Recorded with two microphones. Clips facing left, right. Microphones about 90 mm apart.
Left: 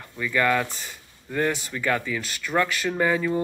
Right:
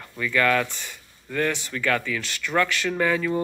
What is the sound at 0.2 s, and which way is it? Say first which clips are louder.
Speech: right 1 dB; 15° left (ahead or behind).